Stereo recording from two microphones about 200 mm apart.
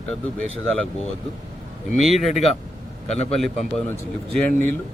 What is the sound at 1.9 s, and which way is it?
Speech, centre (ahead or behind).